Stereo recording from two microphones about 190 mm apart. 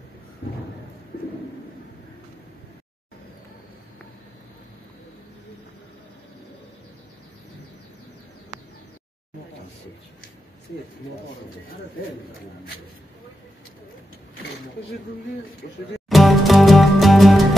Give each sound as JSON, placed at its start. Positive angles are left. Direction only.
{"t": 15.6, "sound": "speech", "side_deg": 55}
{"t": 16.1, "sound": "music", "side_deg": 0}